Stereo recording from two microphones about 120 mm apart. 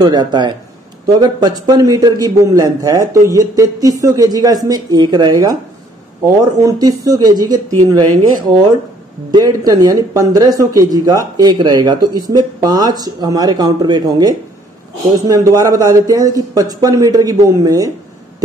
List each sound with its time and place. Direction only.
0.0 s a man's voice: 35° right (ahead or behind)
9.3 s a man's voice: 35° right (ahead or behind)